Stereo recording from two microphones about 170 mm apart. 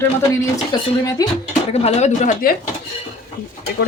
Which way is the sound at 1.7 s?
40° left (ahead or behind).